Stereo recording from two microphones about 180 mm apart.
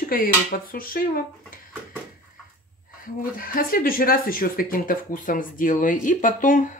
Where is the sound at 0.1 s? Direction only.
50° left (ahead or behind).